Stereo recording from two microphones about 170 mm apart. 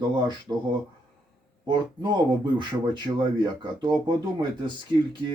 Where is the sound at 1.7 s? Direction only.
25° right (ahead or behind).